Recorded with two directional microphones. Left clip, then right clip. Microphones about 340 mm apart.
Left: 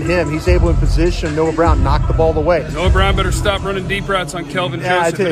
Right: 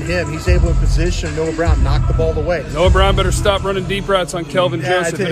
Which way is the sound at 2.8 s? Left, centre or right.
Centre.